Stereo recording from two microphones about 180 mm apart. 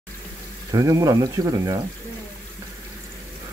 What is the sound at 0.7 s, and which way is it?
Speech, 20° right (ahead or behind).